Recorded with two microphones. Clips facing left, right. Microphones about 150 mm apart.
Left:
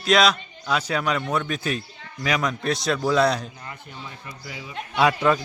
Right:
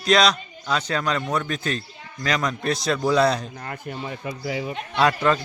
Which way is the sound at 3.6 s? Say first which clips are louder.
Right 7 dB; 65° right (ahead or behind).